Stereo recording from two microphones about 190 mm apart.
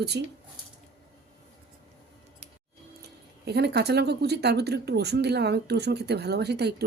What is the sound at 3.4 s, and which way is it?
A woman's voice, 60° right (ahead or behind).